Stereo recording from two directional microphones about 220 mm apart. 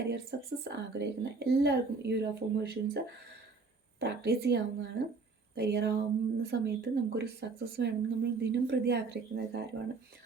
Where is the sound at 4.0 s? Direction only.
45° right (ahead or behind).